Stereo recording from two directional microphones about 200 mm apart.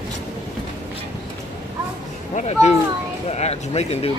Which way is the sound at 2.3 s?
35° left (ahead or behind).